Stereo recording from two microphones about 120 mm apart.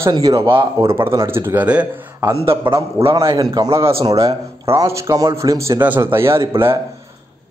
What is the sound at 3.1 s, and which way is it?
A man's voice, 30° right (ahead or behind).